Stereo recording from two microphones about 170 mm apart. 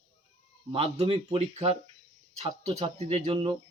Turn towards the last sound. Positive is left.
turn(degrees=-35)  # may be behind; listen again after turning